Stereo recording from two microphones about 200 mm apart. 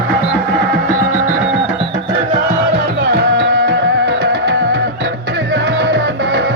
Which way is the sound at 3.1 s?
55° right (ahead or behind).